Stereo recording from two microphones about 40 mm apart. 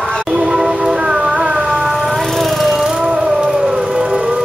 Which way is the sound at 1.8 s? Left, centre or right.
Centre.